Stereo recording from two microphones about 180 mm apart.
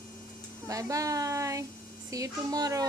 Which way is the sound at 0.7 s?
20° right (ahead or behind).